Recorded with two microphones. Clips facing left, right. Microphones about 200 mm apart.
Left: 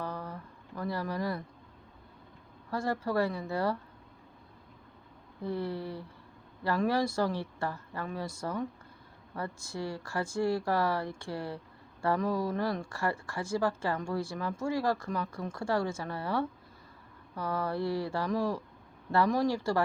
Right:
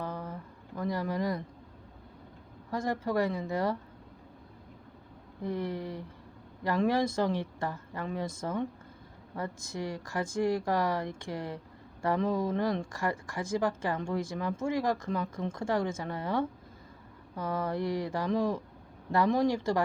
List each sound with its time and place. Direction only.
0.0 s a sound: 20° right (ahead or behind)
0.8 s speech: 20° right (ahead or behind)
2.6 s speech: 20° right (ahead or behind)
5.4 s speech: 15° right (ahead or behind)